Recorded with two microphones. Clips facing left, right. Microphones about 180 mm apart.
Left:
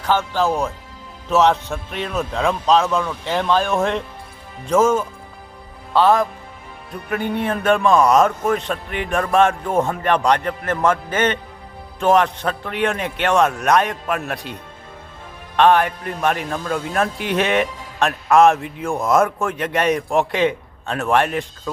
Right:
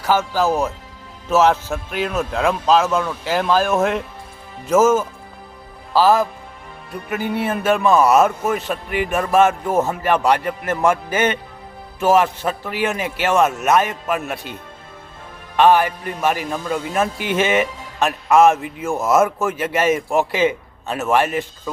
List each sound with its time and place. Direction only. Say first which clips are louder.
0.0 s a man's voice: right 1 dB; 5° right (ahead or behind)